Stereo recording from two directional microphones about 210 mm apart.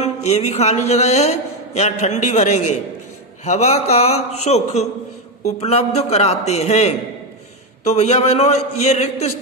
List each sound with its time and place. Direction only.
0.0 s a man's voice: 30° left (ahead or behind)
5.9 s a man's voice: 30° left (ahead or behind)